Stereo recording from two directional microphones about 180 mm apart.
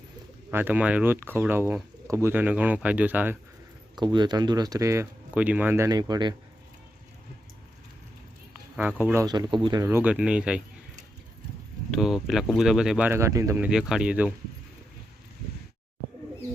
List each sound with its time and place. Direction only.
0.5 s speech: 10° right (ahead or behind)
3.9 s speech: 25° right (ahead or behind)
8.7 s speech: 5° right (ahead or behind)
11.9 s speech: centre (ahead or behind)
13.7 s speech: 5° right (ahead or behind)